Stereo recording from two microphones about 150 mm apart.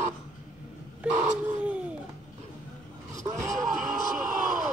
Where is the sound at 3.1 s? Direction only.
20° right (ahead or behind).